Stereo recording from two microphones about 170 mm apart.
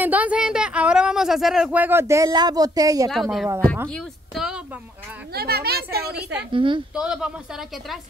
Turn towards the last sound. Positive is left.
turn(degrees=-5)  # may be behind; listen again after turning